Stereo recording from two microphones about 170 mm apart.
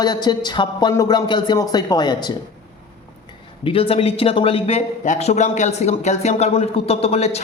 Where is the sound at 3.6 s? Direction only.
30° left (ahead or behind).